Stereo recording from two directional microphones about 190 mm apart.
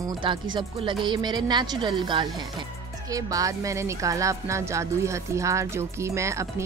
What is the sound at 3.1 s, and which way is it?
Speech, 15° right (ahead or behind).